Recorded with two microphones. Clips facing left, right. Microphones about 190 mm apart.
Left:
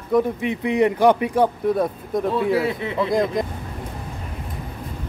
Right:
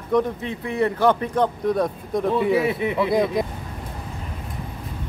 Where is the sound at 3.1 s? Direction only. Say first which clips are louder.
Left 2 dB; 5° right (ahead or behind).